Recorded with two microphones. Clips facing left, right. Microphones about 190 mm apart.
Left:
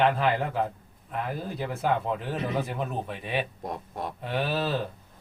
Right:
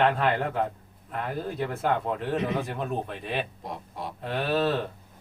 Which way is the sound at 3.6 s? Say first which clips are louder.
Left 2 dB; 50° left (ahead or behind).